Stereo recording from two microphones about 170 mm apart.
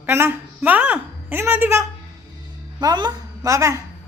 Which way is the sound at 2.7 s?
25° right (ahead or behind).